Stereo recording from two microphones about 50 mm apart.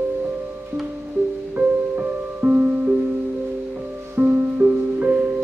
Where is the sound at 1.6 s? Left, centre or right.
Right.